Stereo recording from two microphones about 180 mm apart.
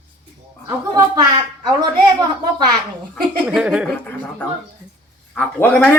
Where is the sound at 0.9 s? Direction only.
20° right (ahead or behind).